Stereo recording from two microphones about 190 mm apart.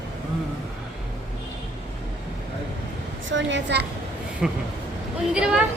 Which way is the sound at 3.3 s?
75° right (ahead or behind).